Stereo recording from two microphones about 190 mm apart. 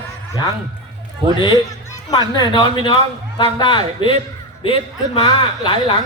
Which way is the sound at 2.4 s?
25° left (ahead or behind).